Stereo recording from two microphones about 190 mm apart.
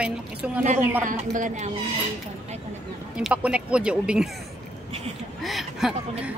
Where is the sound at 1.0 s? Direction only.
40° right (ahead or behind).